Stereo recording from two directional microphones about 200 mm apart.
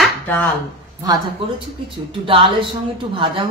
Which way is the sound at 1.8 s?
25° right (ahead or behind).